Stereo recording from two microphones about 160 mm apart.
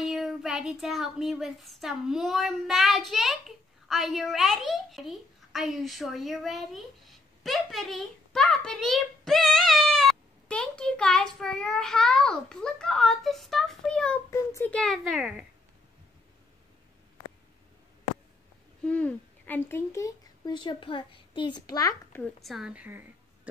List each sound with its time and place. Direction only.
0.0 s speech: centre (ahead or behind)
14.3 s a child's voice: 15° left (ahead or behind)
14.8 s speech: centre (ahead or behind)
18.9 s speech: 10° left (ahead or behind)
22.2 s a woman's voice: centre (ahead or behind)